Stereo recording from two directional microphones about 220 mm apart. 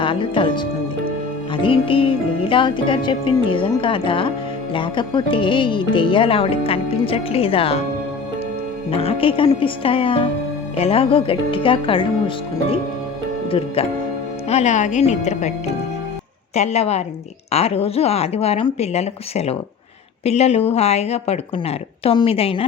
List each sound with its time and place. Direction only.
0.0 s speech: 25° left (ahead or behind)
8.9 s speech: 25° left (ahead or behind)
13.8 s speech: 25° left (ahead or behind)
16.6 s speech: 30° left (ahead or behind)